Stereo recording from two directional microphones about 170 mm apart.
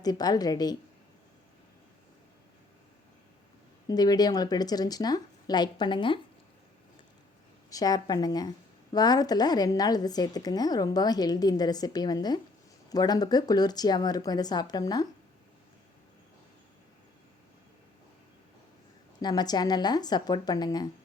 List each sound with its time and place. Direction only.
0.0 s a woman's voice: 25° left (ahead or behind)
3.8 s a woman's voice: 25° left (ahead or behind)
7.7 s a woman's voice: 20° left (ahead or behind)
19.2 s a woman's voice: 25° left (ahead or behind)